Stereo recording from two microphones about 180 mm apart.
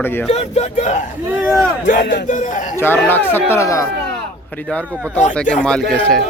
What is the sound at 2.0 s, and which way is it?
Speech, 65° left (ahead or behind).